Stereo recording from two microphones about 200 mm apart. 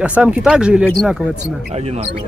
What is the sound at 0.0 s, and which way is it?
Speech, 5° right (ahead or behind).